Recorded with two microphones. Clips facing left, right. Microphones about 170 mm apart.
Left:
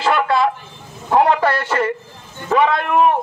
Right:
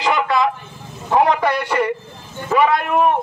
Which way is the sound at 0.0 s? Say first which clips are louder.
Left 1 dB; 15° right (ahead or behind).